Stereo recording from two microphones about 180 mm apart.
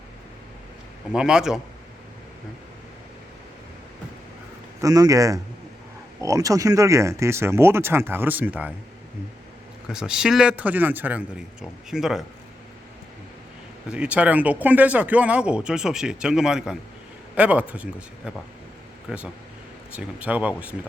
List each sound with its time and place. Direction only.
1.1 s speech: 5° right (ahead or behind)
4.8 s speech: 20° right (ahead or behind)
9.9 s speech: 5° right (ahead or behind)
13.8 s speech: 5° right (ahead or behind)
19.1 s speech: 5° right (ahead or behind)